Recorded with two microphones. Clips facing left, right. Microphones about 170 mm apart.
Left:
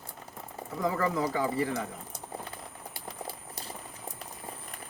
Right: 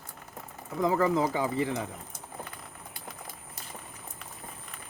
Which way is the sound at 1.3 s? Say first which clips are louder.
Even; 20° right (ahead or behind).